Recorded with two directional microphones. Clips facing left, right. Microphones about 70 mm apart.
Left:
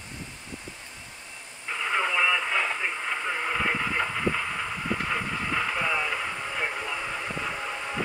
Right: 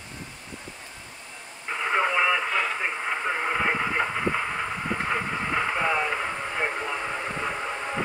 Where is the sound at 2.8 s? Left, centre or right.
Centre.